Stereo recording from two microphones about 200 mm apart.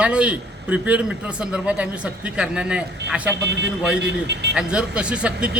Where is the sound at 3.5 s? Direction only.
60° right (ahead or behind).